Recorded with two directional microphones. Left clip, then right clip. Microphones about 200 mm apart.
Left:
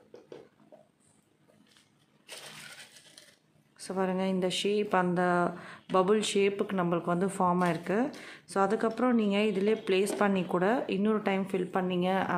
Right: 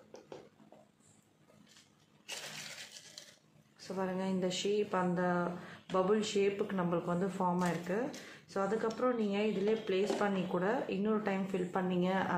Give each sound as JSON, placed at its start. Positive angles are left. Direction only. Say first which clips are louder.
{"t": 3.7, "sound": "speech", "louder": "left 6 dB", "side_deg": 55}